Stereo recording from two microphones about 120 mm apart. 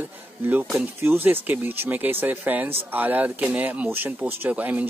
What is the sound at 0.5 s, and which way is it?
Speech, 15° right (ahead or behind).